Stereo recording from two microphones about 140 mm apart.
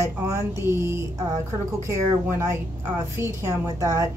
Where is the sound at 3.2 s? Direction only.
20° right (ahead or behind).